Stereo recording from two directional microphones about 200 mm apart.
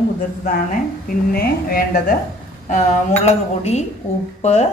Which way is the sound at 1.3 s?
50° left (ahead or behind).